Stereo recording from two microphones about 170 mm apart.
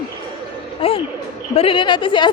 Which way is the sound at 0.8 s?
30° left (ahead or behind).